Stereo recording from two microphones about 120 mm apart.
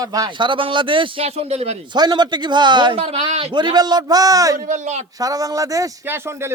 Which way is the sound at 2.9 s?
60° right (ahead or behind).